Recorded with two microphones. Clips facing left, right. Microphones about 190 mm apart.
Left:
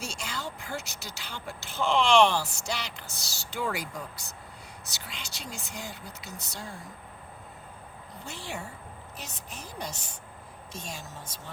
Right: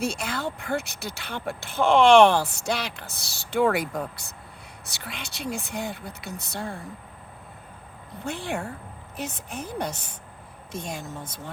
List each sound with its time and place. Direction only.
0.0 s speech: 55° right (ahead or behind)
8.2 s a woman's voice: 55° right (ahead or behind)